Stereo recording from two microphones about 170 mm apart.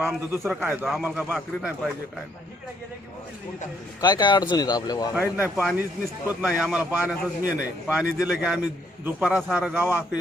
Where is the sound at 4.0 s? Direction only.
25° left (ahead or behind).